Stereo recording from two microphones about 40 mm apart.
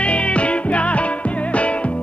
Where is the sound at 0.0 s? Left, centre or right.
Left.